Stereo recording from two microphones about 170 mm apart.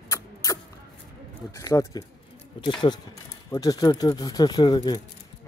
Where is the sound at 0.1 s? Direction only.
20° left (ahead or behind).